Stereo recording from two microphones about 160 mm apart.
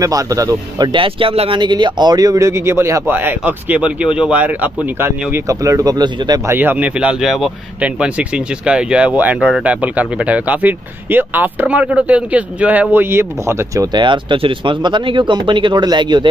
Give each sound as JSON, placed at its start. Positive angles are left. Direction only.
{"t": 0.0, "sound": "speech", "side_deg": -20}